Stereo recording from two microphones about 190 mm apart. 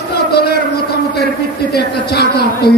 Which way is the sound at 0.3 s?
55° left (ahead or behind).